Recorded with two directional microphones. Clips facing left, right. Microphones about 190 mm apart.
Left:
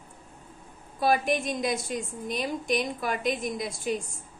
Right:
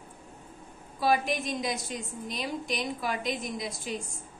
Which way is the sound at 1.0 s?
50° left (ahead or behind).